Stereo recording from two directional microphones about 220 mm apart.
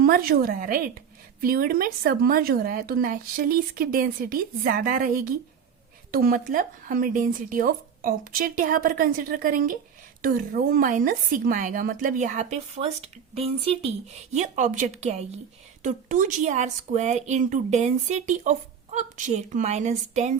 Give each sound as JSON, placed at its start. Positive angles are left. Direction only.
{"t": 0.0, "sound": "speech", "side_deg": -40}